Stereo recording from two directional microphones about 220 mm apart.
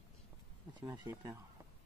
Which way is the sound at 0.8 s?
15° right (ahead or behind).